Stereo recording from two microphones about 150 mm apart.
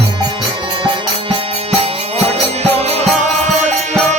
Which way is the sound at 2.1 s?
45° right (ahead or behind).